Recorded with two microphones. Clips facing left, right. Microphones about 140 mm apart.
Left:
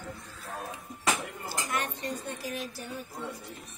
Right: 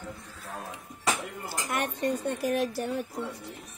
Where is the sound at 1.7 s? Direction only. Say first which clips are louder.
Right 6 dB; 55° right (ahead or behind).